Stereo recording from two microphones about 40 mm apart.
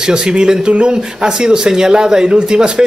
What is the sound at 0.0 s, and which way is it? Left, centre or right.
Speech, right.